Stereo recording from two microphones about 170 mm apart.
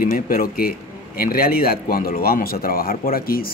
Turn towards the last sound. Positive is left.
turn(degrees=60)  # may be behind; listen again after turning